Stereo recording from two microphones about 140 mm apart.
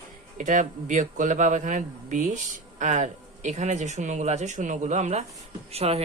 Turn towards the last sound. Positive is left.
turn(degrees=-45)  # may be behind; listen again after turning